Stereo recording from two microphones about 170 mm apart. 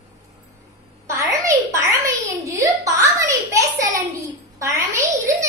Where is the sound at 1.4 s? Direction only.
20° right (ahead or behind).